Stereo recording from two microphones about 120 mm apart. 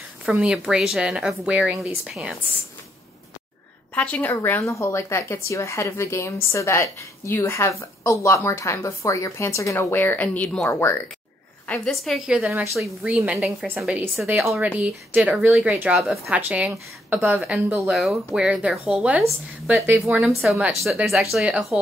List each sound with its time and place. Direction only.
0.2 s a woman's voice: 10° right (ahead or behind)
3.9 s a woman's voice: 10° left (ahead or behind)
4.6 s a woman's voice: 25° left (ahead or behind)
10.7 s a woman's voice: 20° left (ahead or behind)
11.9 s a woman's voice: centre (ahead or behind)
20.8 s a woman's voice: centre (ahead or behind)